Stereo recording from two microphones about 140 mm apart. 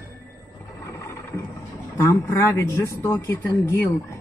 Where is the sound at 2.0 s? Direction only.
20° left (ahead or behind).